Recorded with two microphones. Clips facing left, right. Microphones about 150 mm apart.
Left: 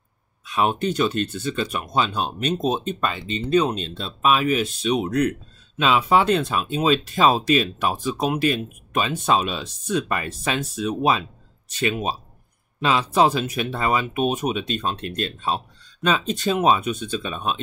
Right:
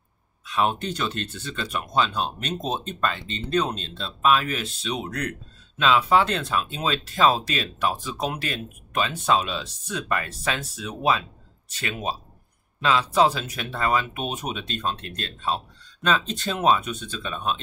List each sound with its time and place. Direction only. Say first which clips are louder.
0.5 s speech: left 3 dB; 10° left (ahead or behind)